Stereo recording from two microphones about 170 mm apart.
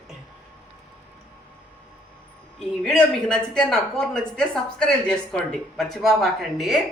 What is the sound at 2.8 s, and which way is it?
Speech, 5° left (ahead or behind).